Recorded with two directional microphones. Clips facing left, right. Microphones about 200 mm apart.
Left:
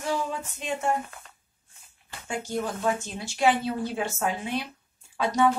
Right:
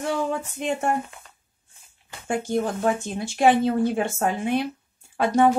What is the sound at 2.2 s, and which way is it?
Speech, 60° right (ahead or behind).